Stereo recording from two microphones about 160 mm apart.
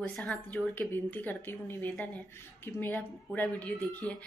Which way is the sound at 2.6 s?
10° left (ahead or behind).